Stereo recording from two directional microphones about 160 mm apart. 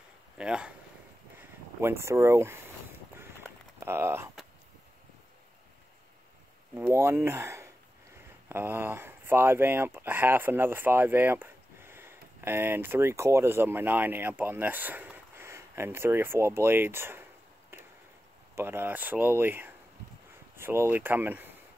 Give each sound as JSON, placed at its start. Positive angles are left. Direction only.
{"t": 0.4, "sound": "speech", "side_deg": -5}
{"t": 1.8, "sound": "speech", "side_deg": -15}
{"t": 3.8, "sound": "a sound", "side_deg": -15}
{"t": 6.7, "sound": "speech", "side_deg": -15}